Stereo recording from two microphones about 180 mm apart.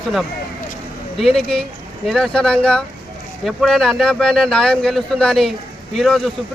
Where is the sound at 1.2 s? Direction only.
Centre (ahead or behind).